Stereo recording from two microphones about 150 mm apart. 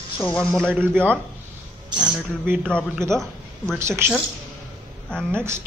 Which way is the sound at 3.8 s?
15° right (ahead or behind).